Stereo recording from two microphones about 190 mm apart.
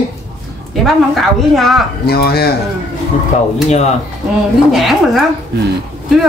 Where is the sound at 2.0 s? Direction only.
55° left (ahead or behind).